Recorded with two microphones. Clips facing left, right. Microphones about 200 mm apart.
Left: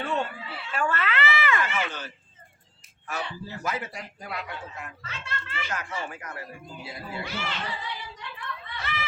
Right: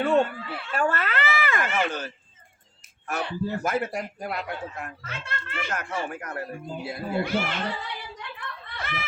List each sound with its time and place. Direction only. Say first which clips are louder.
0.0 s a man's voice: right 8 dB; 55° right (ahead or behind)
0.7 s a man's voice: right 2 dB; 40° right (ahead or behind)
3.1 s a man's voice: right 6 dB; 55° right (ahead or behind)
8.8 s snicker: right 1 dB; 55° right (ahead or behind)